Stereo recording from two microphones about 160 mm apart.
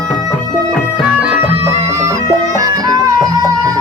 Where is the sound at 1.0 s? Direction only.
5° right (ahead or behind).